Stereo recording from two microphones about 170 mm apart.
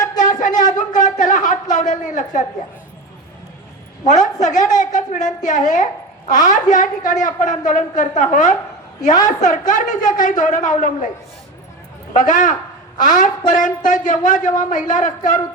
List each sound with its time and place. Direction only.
0.3 s a sound: 50° left (ahead or behind)
1.7 s a woman's voice: 50° left (ahead or behind)
4.0 s a woman's voice: 45° left (ahead or behind)
12.1 s a woman's voice: 50° left (ahead or behind)